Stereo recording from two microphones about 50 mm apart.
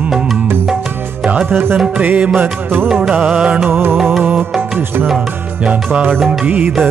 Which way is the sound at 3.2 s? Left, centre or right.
Centre.